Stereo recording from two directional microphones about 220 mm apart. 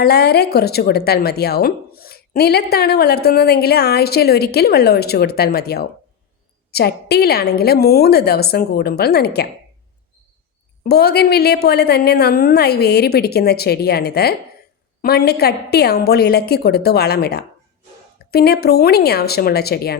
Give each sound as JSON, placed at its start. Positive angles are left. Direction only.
{"t": 0.0, "sound": "a woman's voice", "side_deg": 45}
{"t": 10.8, "sound": "a woman's voice", "side_deg": 45}